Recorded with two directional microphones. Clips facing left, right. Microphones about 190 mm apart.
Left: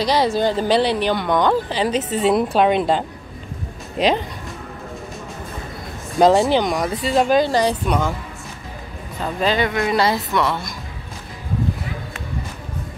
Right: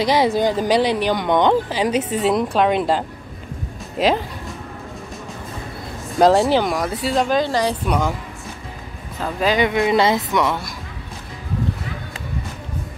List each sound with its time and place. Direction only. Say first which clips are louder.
0.0 s a woman's voice: right 1 dB; 20° right (ahead or behind)
1.7 s a woman's voice: right 1 dB; 10° right (ahead or behind)
2.3 s speech: left 2 dB; 5° left (ahead or behind)
6.1 s speech: even; centre (ahead or behind)
9.2 s a woman's voice: right 1 dB; 10° right (ahead or behind)